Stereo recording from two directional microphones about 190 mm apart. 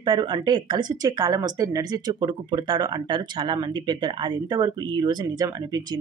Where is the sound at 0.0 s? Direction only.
25° right (ahead or behind).